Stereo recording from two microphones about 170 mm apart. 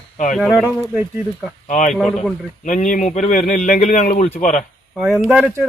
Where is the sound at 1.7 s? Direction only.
45° left (ahead or behind).